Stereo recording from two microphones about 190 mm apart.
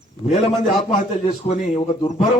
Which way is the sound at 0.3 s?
40° left (ahead or behind).